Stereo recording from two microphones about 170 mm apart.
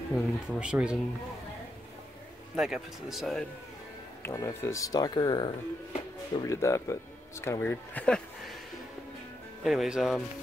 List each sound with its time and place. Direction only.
0.1 s speech: 5° right (ahead or behind)
2.5 s speech: centre (ahead or behind)
4.2 s speech: 20° left (ahead or behind)
9.6 s speech: centre (ahead or behind)